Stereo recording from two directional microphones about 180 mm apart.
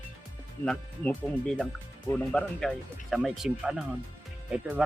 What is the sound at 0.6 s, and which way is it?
Speech, 5° left (ahead or behind).